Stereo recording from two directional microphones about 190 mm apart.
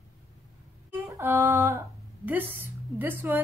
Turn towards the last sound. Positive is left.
turn(degrees=-10)  # may be behind; listen again after turning